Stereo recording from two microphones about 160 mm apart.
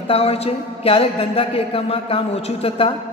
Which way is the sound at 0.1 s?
35° left (ahead or behind).